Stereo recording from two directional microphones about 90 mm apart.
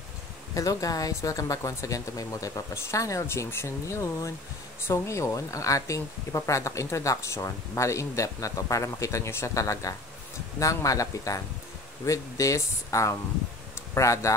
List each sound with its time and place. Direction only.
0.6 s speech: 40° left (ahead or behind)